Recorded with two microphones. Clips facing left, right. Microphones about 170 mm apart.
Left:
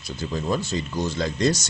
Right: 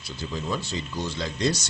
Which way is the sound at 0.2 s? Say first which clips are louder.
Left 5 dB; 45° left (ahead or behind).